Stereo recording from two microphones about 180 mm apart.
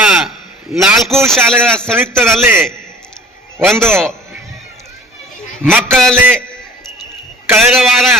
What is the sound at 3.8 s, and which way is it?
Speech, 15° right (ahead or behind).